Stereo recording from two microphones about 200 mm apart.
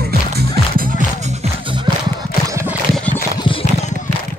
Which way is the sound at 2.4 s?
15° right (ahead or behind).